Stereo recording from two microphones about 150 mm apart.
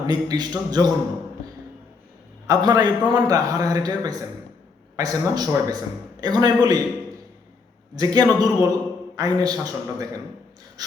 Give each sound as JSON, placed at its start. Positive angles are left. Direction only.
{"t": 0.1, "sound": "a man's voice", "side_deg": -25}
{"t": 2.5, "sound": "a man's voice", "side_deg": -25}
{"t": 7.9, "sound": "a man's voice", "side_deg": -25}